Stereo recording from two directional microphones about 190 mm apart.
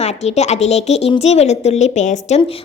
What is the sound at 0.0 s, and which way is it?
A woman's voice, 35° left (ahead or behind).